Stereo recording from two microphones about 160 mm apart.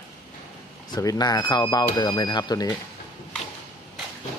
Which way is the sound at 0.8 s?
25° left (ahead or behind).